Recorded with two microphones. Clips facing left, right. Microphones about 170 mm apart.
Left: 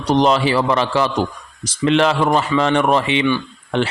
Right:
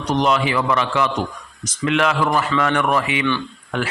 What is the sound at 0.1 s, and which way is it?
A man's voice, 30° left (ahead or behind).